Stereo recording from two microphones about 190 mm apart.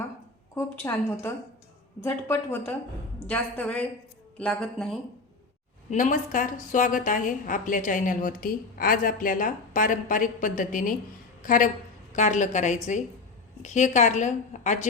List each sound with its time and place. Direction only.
0.5 s speech: 15° left (ahead or behind)
2.0 s a woman's voice: 10° left (ahead or behind)
5.9 s a woman's voice: 45° left (ahead or behind)